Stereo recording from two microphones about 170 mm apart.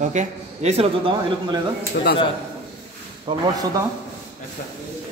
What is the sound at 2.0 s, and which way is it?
Speech, 65° left (ahead or behind).